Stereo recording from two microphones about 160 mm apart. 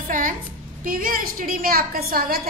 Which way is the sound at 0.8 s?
65° right (ahead or behind).